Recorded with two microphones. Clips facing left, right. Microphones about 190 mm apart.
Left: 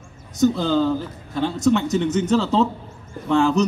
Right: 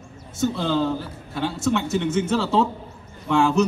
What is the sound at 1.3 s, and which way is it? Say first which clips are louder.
Speech: left 4 dB; 5° right (ahead or behind).